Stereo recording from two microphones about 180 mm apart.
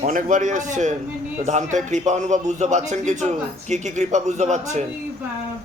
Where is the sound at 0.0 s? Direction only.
45° right (ahead or behind).